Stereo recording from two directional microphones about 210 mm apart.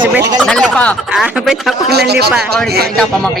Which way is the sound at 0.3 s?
5° left (ahead or behind).